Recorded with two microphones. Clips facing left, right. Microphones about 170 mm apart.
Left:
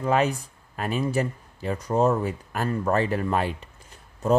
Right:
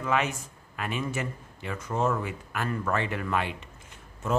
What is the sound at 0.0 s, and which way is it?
Speech, 35° left (ahead or behind).